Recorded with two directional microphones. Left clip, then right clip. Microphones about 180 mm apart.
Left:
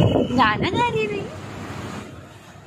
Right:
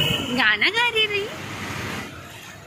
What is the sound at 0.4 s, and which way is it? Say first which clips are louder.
Speech: right 2 dB; 25° left (ahead or behind).